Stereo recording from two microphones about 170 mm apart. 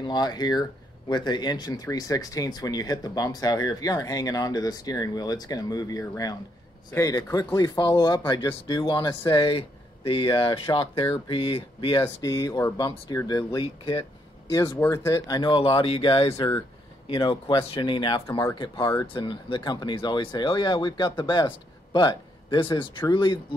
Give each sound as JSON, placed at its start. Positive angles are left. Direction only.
{"t": 0.0, "sound": "speech", "side_deg": 25}